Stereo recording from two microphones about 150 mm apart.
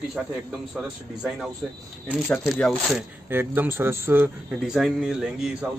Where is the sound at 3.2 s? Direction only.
15° right (ahead or behind).